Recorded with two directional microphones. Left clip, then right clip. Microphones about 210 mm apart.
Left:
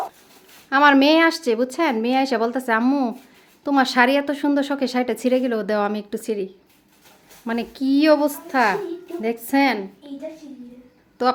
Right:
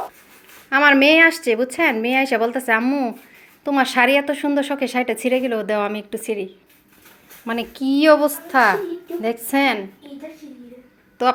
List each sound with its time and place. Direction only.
0.7 s a woman's voice: 15° left (ahead or behind)
11.2 s a woman's voice: 15° left (ahead or behind)